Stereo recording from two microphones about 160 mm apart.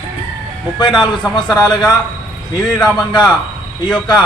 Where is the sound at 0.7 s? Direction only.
25° left (ahead or behind).